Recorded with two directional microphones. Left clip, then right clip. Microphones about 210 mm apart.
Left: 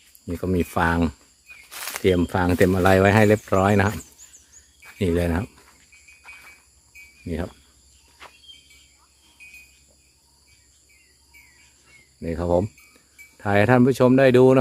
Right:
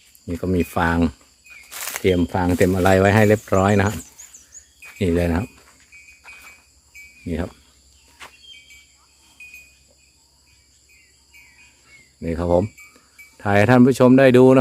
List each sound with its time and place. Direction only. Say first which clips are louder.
0.3 s speech: right 2 dB; centre (ahead or behind)
1.7 s a sound: right 1 dB; 5° right (ahead or behind)
2.1 s speech: right 1 dB; 5° left (ahead or behind)
7.3 s speech: right 3 dB; 5° right (ahead or behind)
8.2 s cricket: right 4 dB; 15° right (ahead or behind)
12.2 s a sound: right 3 dB; 5° right (ahead or behind)